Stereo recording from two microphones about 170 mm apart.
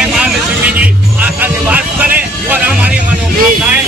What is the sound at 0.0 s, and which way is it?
Music, 5° right (ahead or behind).